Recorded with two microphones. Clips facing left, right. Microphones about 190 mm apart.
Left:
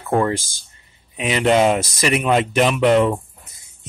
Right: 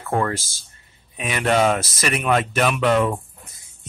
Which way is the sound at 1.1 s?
20° left (ahead or behind).